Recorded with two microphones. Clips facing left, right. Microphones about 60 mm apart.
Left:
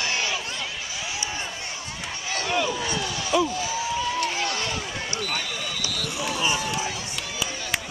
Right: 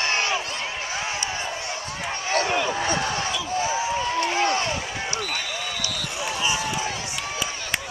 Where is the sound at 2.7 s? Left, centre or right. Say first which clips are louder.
Right 4 dB; right.